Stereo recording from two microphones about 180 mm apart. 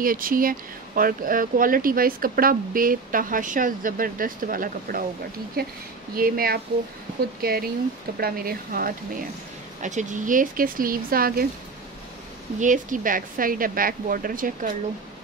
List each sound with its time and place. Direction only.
0.0 s speech: 50° right (ahead or behind)
9.8 s speech: 45° right (ahead or behind)
12.5 s speech: 45° right (ahead or behind)